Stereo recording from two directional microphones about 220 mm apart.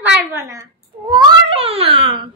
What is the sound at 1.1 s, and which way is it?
A child's voice, 25° right (ahead or behind).